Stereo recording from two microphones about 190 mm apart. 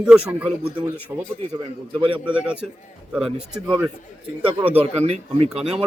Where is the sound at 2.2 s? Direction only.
5° right (ahead or behind).